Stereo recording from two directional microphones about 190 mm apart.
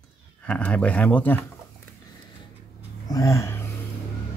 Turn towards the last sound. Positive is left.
turn(degrees=15)  # may be behind; listen again after turning